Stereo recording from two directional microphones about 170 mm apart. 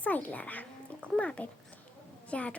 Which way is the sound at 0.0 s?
10° left (ahead or behind).